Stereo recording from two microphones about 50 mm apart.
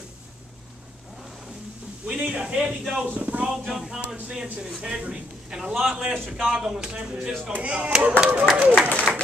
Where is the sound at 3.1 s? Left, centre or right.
Right.